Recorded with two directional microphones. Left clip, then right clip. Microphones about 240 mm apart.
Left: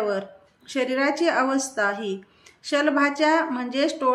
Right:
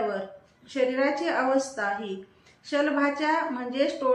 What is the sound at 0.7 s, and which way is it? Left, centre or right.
A woman's voice, left.